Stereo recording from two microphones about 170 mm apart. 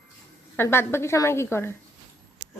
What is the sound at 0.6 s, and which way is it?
Speech, 15° left (ahead or behind).